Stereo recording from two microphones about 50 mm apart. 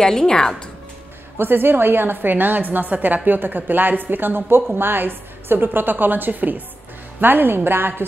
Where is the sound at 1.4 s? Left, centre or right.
Right.